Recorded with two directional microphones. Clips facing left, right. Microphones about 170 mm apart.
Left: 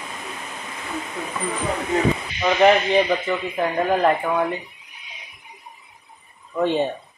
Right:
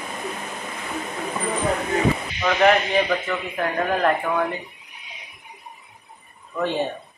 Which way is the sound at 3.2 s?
15° left (ahead or behind).